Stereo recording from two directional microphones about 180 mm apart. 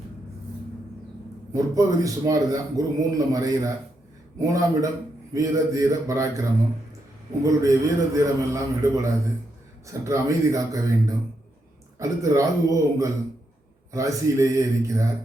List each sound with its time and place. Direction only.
1.7 s a man's voice: 20° right (ahead or behind)
7.4 s a man's voice: 20° right (ahead or behind)